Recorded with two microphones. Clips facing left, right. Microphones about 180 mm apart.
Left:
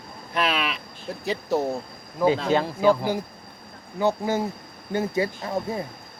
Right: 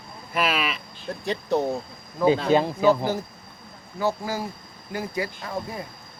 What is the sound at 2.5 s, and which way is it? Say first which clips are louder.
Speech: right 2 dB; 15° right (ahead or behind).